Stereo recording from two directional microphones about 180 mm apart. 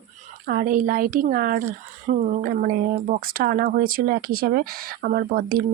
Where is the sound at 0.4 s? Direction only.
50° right (ahead or behind).